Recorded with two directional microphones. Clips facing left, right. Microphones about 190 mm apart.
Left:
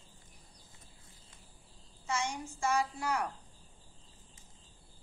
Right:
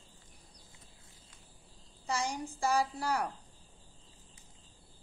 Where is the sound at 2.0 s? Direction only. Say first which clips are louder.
Right 1 dB; 35° right (ahead or behind).